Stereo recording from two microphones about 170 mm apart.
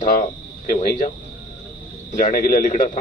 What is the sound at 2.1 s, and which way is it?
Speech, 55° left (ahead or behind).